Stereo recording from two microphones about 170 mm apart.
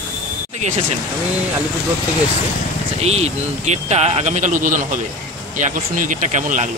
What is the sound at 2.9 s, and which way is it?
Speech, 40° right (ahead or behind).